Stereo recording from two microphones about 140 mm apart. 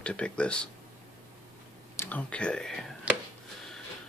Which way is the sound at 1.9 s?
10° left (ahead or behind).